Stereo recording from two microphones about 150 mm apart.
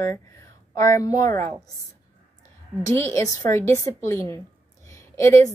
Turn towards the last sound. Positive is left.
turn(degrees=20)  # may be behind; listen again after turning